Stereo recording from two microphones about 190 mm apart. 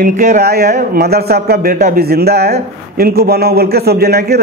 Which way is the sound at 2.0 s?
55° right (ahead or behind).